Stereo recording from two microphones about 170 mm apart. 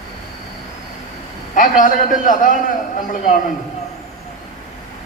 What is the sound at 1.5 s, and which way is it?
A man's voice, 50° left (ahead or behind).